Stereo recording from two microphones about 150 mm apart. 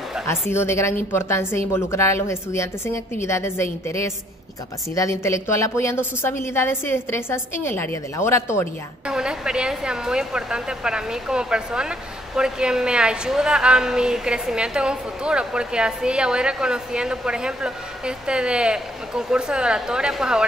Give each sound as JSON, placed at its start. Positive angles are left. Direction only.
{"t": 0.3, "sound": "a woman's voice", "side_deg": 15}
{"t": 9.0, "sound": "a woman's voice", "side_deg": -5}